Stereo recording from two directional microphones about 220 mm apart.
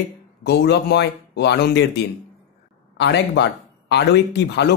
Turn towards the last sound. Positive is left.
turn(degrees=50)  # may be behind; listen again after turning